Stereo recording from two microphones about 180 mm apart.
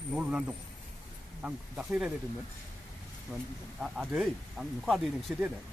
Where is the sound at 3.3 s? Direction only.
10° left (ahead or behind).